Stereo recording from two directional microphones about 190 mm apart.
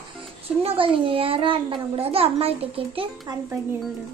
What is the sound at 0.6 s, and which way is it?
A child's voice, 30° right (ahead or behind).